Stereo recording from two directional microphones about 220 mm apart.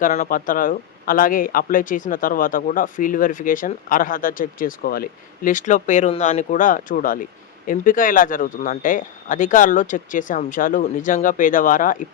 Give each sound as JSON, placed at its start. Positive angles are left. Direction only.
{"t": 0.0, "sound": "speech", "side_deg": 35}